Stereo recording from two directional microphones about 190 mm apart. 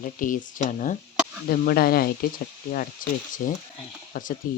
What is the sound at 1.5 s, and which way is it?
Speech, 50° left (ahead or behind).